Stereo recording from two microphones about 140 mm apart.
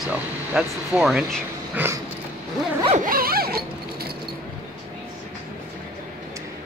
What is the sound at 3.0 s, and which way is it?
Zipper, 90° right.